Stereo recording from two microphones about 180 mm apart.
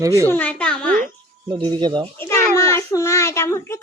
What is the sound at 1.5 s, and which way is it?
Speech, 25° right (ahead or behind).